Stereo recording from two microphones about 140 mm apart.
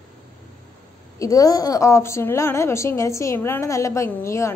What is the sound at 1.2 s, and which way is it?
A woman's voice, 25° left (ahead or behind).